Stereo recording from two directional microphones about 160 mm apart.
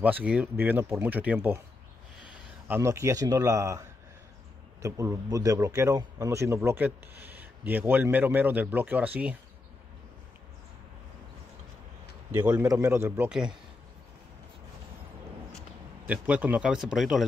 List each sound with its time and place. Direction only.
0.0 s a man's voice: 10° right (ahead or behind)
2.7 s a man's voice: 15° right (ahead or behind)
4.8 s a man's voice: 20° right (ahead or behind)
12.5 s a man's voice: 20° right (ahead or behind)
13.3 s speech: 5° right (ahead or behind)
16.1 s a man's voice: 10° right (ahead or behind)